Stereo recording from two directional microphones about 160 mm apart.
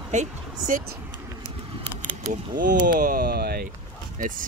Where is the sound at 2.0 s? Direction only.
55° right (ahead or behind).